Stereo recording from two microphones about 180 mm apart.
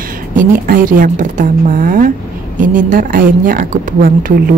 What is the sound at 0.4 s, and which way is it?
A woman's voice, 50° right (ahead or behind).